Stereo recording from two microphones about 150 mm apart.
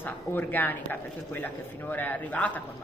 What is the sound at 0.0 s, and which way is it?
A woman's voice, 15° left (ahead or behind).